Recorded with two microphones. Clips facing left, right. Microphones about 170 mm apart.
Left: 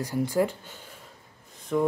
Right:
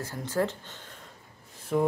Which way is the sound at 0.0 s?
10° left (ahead or behind).